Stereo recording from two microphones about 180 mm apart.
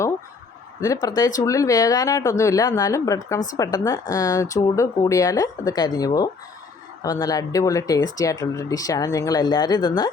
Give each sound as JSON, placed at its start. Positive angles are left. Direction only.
{"t": 1.0, "sound": "speech", "side_deg": 20}